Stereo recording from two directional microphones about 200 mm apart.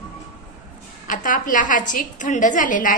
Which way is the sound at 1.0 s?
40° left (ahead or behind).